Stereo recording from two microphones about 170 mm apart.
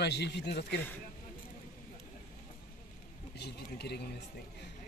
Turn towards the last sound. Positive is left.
turn(degrees=70)  # may be behind; listen again after turning